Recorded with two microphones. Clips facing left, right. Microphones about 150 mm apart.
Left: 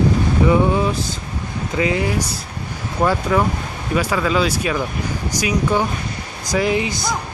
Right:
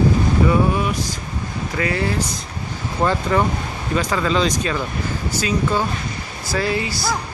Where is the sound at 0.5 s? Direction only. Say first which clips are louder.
Left 2 dB; 25° left (ahead or behind).